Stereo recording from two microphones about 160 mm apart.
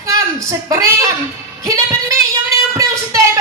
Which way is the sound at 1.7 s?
20° right (ahead or behind).